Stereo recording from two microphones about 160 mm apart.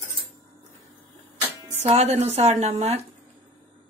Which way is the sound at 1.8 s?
40° right (ahead or behind).